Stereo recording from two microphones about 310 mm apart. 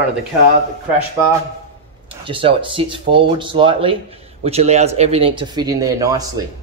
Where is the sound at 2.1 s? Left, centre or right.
Centre.